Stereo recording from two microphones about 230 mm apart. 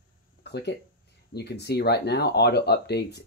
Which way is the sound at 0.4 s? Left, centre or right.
Left.